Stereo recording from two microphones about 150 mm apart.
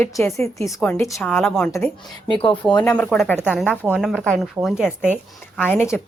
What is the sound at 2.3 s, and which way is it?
Speech, 35° left (ahead or behind).